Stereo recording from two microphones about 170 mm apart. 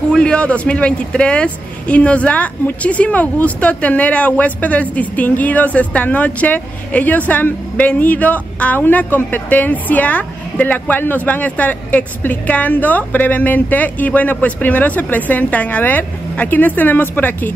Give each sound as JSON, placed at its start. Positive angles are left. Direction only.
{"t": 0.1, "sound": "speech", "side_deg": 5}